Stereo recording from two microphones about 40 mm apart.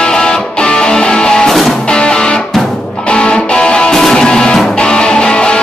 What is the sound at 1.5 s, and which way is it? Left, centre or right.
Music, centre.